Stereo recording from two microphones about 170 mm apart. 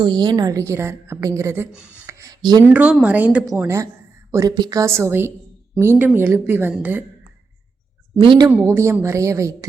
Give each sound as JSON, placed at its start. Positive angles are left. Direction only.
{"t": 0.0, "sound": "a woman's voice", "side_deg": -25}
{"t": 2.0, "sound": "a sound", "side_deg": -15}
{"t": 2.6, "sound": "a woman's voice", "side_deg": -10}
{"t": 8.2, "sound": "a woman's voice", "side_deg": -30}
{"t": 8.4, "sound": "a woman's voice", "side_deg": -15}